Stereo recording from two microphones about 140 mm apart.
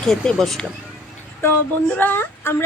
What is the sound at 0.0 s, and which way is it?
Speech, 5° left (ahead or behind).